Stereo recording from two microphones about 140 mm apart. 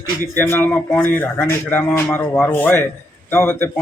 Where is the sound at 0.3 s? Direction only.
15° left (ahead or behind).